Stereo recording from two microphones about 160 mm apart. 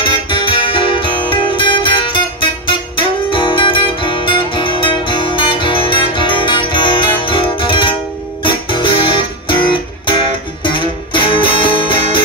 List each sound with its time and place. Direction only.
0.0 s music: 30° left (ahead or behind)
8.5 s guitar: 30° left (ahead or behind)
9.5 s music: 30° left (ahead or behind)